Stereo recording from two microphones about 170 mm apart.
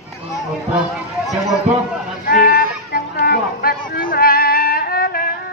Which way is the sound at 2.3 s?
60° left (ahead or behind).